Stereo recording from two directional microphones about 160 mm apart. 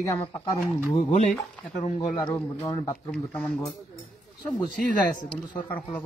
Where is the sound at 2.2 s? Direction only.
15° left (ahead or behind).